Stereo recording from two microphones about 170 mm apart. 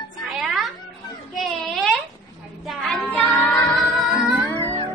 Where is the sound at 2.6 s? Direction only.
Centre (ahead or behind).